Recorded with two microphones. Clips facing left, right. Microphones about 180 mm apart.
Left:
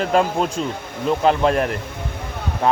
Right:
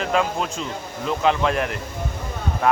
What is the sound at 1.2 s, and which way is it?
Speech, 40° left (ahead or behind).